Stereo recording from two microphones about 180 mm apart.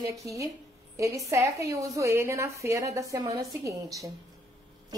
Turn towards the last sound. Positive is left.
turn(degrees=-20)  # may be behind; listen again after turning